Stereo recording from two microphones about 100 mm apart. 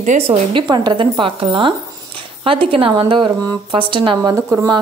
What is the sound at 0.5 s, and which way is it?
A woman's voice, 50° right (ahead or behind).